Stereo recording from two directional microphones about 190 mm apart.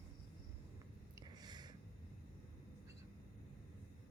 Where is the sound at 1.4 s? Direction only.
20° right (ahead or behind).